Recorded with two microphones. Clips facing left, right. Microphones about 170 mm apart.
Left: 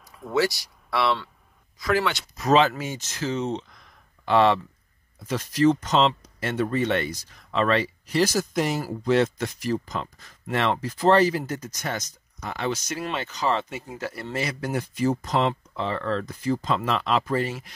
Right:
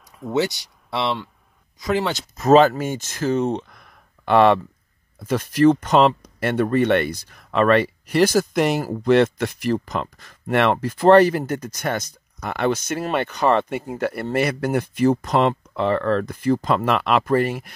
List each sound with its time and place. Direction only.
0.3 s speech: 20° right (ahead or behind)
2.0 s speech: 45° right (ahead or behind); by 17.7 s 60° right (ahead or behind)